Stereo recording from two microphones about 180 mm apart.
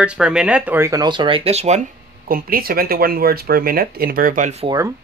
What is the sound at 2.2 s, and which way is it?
Speech, 55° right (ahead or behind).